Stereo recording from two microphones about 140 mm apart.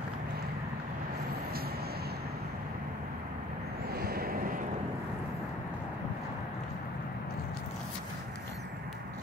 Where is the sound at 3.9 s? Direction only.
90° right.